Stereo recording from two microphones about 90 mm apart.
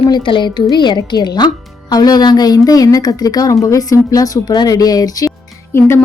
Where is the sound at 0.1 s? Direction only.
65° left (ahead or behind); by 5.3 s 40° left (ahead or behind).